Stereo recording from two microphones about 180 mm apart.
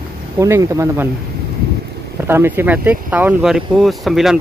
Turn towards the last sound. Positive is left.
turn(degrees=0)  # may be behind; listen again after turning